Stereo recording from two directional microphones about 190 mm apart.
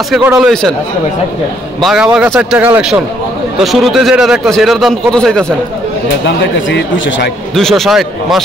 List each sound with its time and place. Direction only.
0.4 s a man's voice: centre (ahead or behind)
1.8 s a man's voice: centre (ahead or behind)
6.2 s speech: 70° left (ahead or behind)
7.5 s a man's voice: centre (ahead or behind)